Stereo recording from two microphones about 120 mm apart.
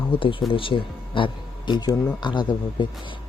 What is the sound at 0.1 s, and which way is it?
Speech, 45° left (ahead or behind).